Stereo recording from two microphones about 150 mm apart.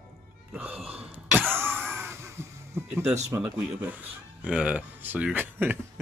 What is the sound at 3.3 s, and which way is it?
Speech, 10° right (ahead or behind).